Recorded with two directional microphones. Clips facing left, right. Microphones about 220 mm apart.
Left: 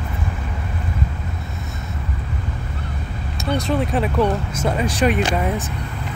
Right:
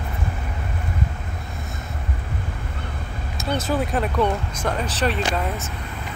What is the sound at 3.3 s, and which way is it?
Speech, 5° right (ahead or behind).